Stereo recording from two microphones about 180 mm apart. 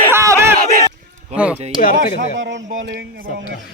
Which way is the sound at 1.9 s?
90° right.